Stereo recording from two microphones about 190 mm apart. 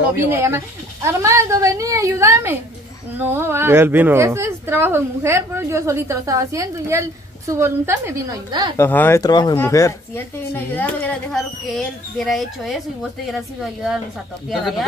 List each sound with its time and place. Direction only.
0.1 s a woman's voice: 15° right (ahead or behind)
8.7 s speech: 10° left (ahead or behind)
14.5 s speech: centre (ahead or behind)